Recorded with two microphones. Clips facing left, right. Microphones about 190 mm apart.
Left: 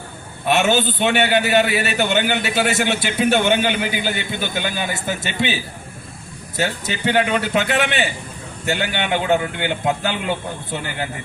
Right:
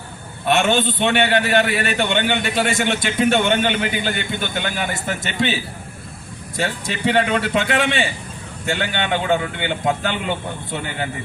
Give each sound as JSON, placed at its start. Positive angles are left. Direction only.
{"t": 0.4, "sound": "a man's voice", "side_deg": 5}
{"t": 6.6, "sound": "a man's voice", "side_deg": 5}